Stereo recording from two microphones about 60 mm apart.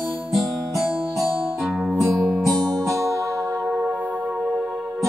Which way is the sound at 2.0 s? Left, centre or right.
Right.